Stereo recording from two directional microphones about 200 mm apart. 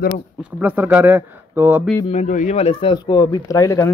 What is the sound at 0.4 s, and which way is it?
Speech, 10° right (ahead or behind).